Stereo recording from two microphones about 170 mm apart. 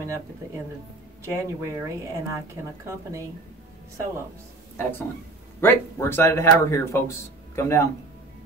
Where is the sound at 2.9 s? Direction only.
15° right (ahead or behind).